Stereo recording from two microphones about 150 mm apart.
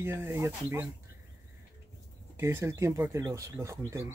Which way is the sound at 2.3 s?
15° right (ahead or behind).